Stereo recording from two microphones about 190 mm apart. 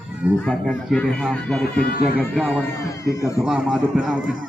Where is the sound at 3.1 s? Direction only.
15° left (ahead or behind).